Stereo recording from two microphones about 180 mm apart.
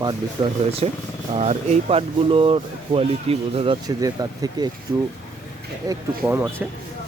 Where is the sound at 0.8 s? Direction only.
35° right (ahead or behind).